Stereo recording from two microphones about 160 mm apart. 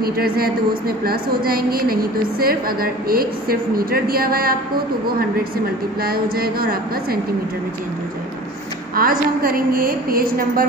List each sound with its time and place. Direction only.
0.0 s a woman's voice: 70° right (ahead or behind)
6.0 s a woman's voice: 70° right (ahead or behind)
8.9 s a woman's voice: 65° right (ahead or behind)